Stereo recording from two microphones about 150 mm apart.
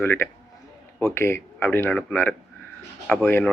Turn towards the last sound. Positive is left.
turn(degrees=15)  # may be behind; listen again after turning